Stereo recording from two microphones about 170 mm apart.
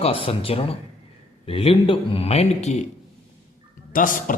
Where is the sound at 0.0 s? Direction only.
35° left (ahead or behind).